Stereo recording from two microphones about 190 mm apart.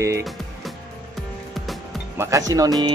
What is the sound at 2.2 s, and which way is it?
Speech, 15° right (ahead or behind).